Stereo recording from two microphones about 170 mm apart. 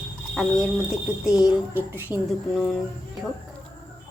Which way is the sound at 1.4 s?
10° right (ahead or behind).